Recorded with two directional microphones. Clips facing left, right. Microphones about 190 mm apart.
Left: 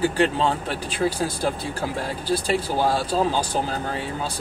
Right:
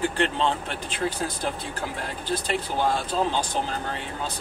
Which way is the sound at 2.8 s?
40° left (ahead or behind).